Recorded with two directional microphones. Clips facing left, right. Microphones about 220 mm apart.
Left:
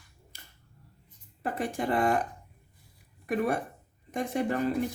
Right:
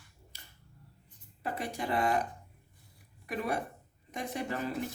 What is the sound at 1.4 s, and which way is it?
Speech, 50° left (ahead or behind).